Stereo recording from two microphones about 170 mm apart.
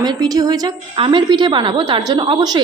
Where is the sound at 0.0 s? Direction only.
20° right (ahead or behind).